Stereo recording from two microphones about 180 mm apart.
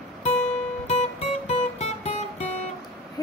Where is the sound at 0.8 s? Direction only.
40° left (ahead or behind).